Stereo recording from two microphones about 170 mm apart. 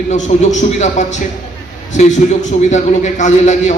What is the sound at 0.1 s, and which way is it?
A man's voice, 45° left (ahead or behind).